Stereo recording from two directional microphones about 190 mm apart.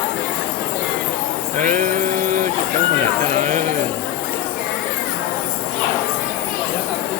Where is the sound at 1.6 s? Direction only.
45° right (ahead or behind).